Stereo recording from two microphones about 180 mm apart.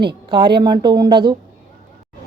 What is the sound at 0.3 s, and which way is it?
Speech, 25° right (ahead or behind).